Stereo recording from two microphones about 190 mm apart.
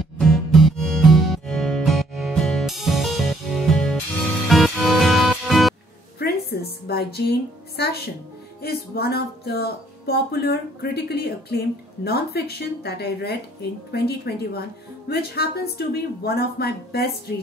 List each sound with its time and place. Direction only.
0.2 s music: centre (ahead or behind)
6.1 s a woman's voice: 55° left (ahead or behind)